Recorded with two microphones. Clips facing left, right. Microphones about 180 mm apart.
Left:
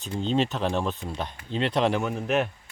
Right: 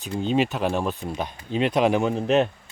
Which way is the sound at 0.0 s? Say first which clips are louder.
Right 3 dB; 10° right (ahead or behind).